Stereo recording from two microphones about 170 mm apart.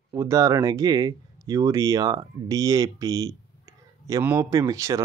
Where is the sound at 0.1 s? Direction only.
20° right (ahead or behind).